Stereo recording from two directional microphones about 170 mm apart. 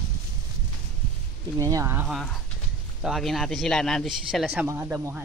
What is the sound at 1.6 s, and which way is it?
Speech, 20° right (ahead or behind).